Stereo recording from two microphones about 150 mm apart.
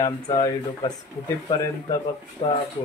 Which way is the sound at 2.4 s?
35° left (ahead or behind).